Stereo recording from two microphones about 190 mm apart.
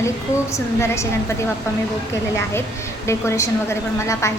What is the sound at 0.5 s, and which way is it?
Speech, 15° left (ahead or behind).